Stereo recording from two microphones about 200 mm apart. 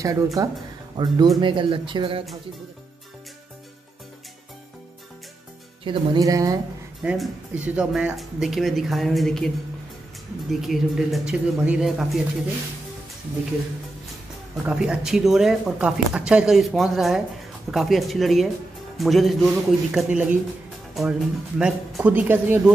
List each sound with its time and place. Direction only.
0.0 s speech: 15° right (ahead or behind)
5.9 s speech: 20° right (ahead or behind)
7.0 s speech: 5° right (ahead or behind)
10.5 s speech: centre (ahead or behind)
14.6 s speech: 5° right (ahead or behind)
21.5 s speech: 5° right (ahead or behind)